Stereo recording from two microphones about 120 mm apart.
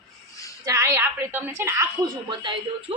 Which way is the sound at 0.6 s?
25° right (ahead or behind).